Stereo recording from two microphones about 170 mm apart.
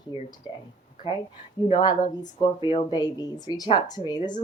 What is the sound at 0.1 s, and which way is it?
Speech, 20° right (ahead or behind).